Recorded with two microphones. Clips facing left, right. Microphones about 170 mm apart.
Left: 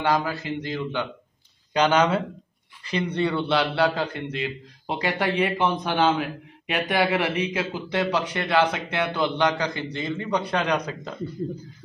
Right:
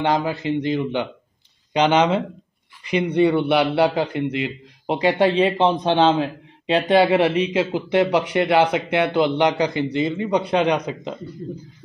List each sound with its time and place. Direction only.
0.0 s a man's voice: 20° right (ahead or behind)